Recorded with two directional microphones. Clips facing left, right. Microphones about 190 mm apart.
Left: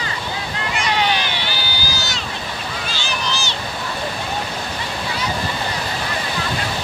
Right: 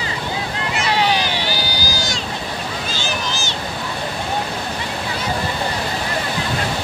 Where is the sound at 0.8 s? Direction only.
35° right (ahead or behind).